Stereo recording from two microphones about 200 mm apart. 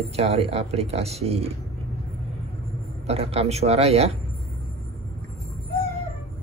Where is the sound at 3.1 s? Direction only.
30° right (ahead or behind).